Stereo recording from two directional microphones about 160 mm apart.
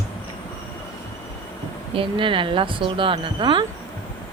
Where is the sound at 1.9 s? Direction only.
35° right (ahead or behind).